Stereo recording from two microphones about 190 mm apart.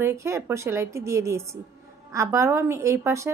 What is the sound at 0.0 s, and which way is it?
A woman's voice, 15° right (ahead or behind).